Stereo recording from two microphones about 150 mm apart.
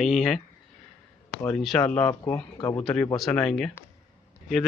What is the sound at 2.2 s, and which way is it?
Speech, 25° left (ahead or behind).